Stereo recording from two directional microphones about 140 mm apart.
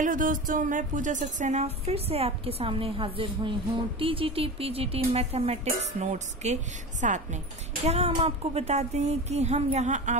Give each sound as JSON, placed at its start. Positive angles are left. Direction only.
{"t": 0.0, "sound": "a woman's voice", "side_deg": -70}